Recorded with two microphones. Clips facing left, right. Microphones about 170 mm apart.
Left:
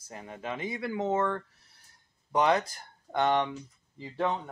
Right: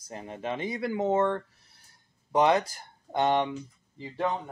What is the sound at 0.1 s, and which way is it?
Speech, 30° right (ahead or behind).